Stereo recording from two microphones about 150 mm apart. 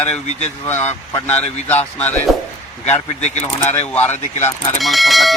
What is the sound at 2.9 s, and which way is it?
Speech, 50° left (ahead or behind).